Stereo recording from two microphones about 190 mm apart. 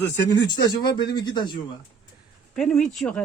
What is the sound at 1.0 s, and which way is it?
Speech, 20° left (ahead or behind).